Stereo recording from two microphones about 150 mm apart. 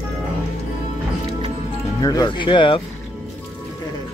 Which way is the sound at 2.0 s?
25° left (ahead or behind).